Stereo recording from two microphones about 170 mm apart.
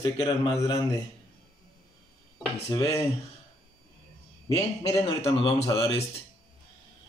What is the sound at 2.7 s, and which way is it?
Speech, 20° left (ahead or behind).